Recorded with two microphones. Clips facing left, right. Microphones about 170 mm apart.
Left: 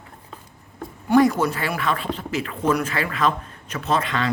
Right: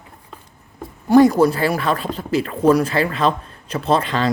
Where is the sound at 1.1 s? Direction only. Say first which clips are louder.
Right 5 dB; 35° right (ahead or behind).